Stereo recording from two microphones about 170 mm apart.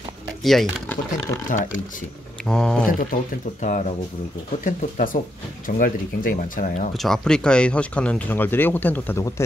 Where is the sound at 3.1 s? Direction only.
50° left (ahead or behind).